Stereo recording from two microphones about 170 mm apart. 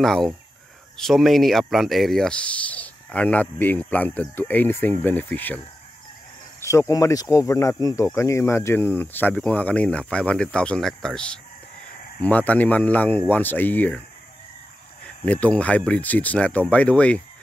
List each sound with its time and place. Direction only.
0.0 s speech: centre (ahead or behind)
6.6 s speech: 15° left (ahead or behind)
15.2 s speech: 10° left (ahead or behind)